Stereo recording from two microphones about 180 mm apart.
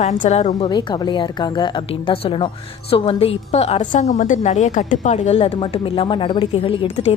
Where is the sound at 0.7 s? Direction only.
25° left (ahead or behind).